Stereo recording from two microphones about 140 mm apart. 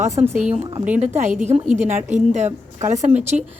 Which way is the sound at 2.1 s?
60° right (ahead or behind).